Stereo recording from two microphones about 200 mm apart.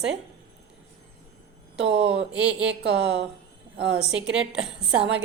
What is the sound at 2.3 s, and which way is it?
Speech, 5° right (ahead or behind).